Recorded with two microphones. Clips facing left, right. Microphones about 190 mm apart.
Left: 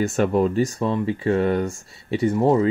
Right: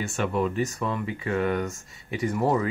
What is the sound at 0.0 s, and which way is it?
Speech, 40° left (ahead or behind).